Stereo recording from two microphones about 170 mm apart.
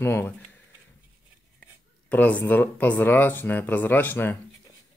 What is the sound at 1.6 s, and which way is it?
Speech, 10° left (ahead or behind).